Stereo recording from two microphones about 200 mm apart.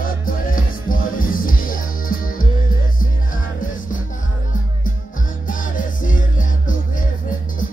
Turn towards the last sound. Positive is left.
turn(degrees=40)  # may be behind; listen again after turning